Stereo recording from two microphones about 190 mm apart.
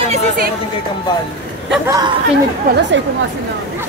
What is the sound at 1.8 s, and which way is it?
Speech, 20° right (ahead or behind).